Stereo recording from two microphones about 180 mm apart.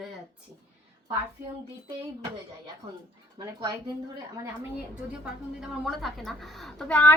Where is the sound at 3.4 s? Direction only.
25° right (ahead or behind).